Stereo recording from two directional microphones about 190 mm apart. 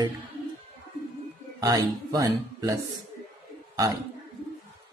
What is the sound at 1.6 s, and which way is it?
A man's voice, 20° right (ahead or behind).